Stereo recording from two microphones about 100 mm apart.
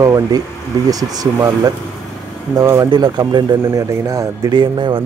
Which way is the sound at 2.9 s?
45° right (ahead or behind).